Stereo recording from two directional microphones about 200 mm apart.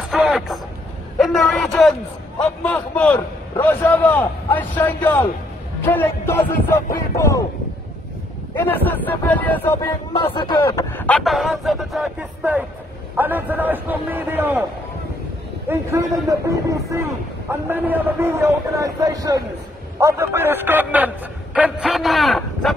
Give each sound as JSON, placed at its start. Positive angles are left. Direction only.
{"t": 0.1, "sound": "vehicle", "side_deg": 0}
{"t": 1.1, "sound": "a sound", "side_deg": 0}
{"t": 2.6, "sound": "speech", "side_deg": 5}
{"t": 8.5, "sound": "speech", "side_deg": 10}
{"t": 11.0, "sound": "a man's voice", "side_deg": 5}
{"t": 15.7, "sound": "a man's voice", "side_deg": -15}